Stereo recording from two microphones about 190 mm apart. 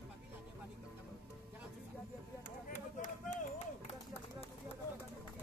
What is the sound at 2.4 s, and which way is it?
Run, 45° left (ahead or behind).